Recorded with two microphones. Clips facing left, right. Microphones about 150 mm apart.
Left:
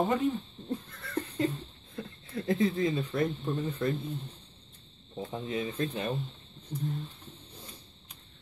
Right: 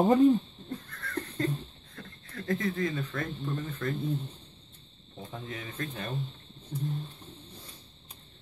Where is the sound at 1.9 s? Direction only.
20° left (ahead or behind).